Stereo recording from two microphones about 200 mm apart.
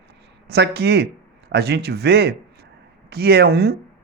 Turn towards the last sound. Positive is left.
turn(degrees=-50)  # may be behind; listen again after turning